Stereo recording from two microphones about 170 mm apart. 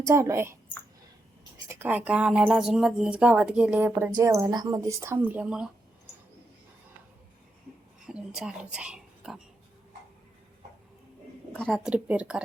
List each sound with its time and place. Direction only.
0.0 s speech: 15° right (ahead or behind)
1.6 s speech: 10° right (ahead or behind)
8.0 s speech: 5° right (ahead or behind)
11.5 s speech: 5° left (ahead or behind)